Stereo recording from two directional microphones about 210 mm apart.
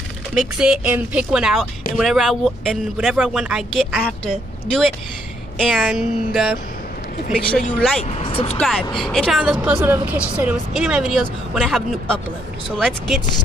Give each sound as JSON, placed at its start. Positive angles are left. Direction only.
{"t": 0.3, "sound": "speech", "side_deg": -5}
{"t": 5.6, "sound": "speech", "side_deg": -5}
{"t": 8.0, "sound": "speech", "side_deg": 30}
{"t": 8.5, "sound": "speech", "side_deg": 0}